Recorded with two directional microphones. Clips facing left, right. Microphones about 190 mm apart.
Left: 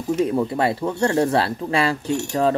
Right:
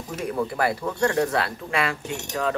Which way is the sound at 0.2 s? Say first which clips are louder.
Left 3 dB; 25° left (ahead or behind).